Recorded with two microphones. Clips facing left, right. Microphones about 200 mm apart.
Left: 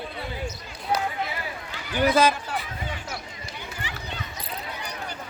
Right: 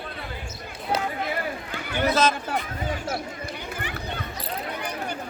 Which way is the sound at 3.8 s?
55° right (ahead or behind).